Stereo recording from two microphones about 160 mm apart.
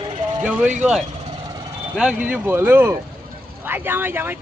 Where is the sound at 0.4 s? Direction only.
5° right (ahead or behind).